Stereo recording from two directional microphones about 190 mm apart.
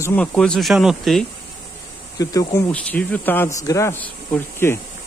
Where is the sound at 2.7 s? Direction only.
10° left (ahead or behind).